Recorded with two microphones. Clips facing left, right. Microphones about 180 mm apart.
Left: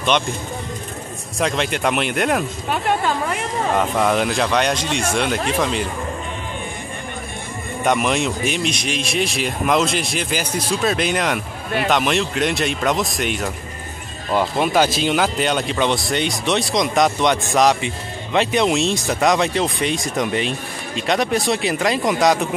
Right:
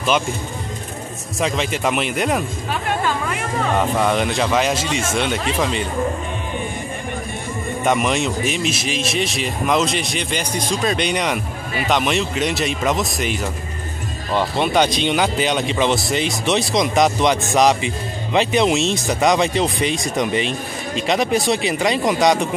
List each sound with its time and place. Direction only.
1.4 s speech: centre (ahead or behind)
3.7 s speech: centre (ahead or behind)
7.8 s speech: centre (ahead or behind)